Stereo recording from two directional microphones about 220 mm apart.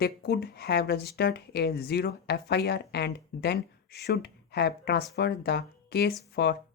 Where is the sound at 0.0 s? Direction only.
45° left (ahead or behind).